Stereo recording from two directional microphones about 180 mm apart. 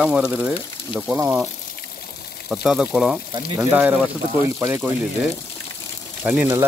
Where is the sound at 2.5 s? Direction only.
5° right (ahead or behind).